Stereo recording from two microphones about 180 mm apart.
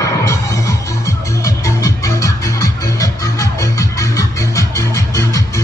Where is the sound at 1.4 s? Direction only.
20° left (ahead or behind).